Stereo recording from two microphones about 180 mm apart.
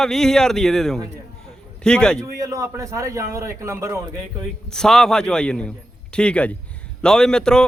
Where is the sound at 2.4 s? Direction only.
20° right (ahead or behind).